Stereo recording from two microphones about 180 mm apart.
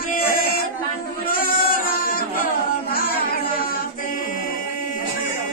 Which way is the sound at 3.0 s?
55° left (ahead or behind).